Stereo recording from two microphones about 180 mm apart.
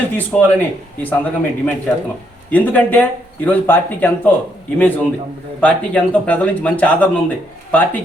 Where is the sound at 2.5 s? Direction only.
10° left (ahead or behind).